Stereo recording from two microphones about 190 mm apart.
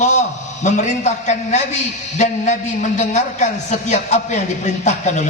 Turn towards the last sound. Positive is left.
turn(degrees=40)  # may be behind; listen again after turning